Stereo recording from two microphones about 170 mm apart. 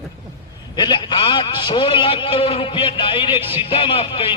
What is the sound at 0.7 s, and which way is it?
A man's voice, 25° left (ahead or behind).